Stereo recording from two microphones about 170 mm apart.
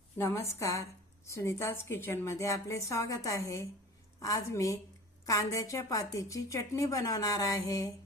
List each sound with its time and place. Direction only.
0.2 s a woman's voice: 15° left (ahead or behind)